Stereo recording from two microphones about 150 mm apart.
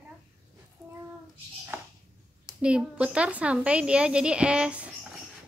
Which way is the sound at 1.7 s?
15° right (ahead or behind).